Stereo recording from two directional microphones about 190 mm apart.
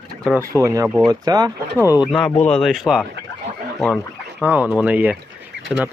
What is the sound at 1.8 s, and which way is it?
Speech, 20° left (ahead or behind).